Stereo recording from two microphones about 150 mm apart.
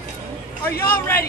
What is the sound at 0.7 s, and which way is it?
Speech, 15° left (ahead or behind).